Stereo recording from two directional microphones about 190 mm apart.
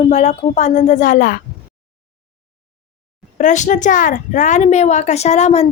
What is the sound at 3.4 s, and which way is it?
Speech, 40° left (ahead or behind).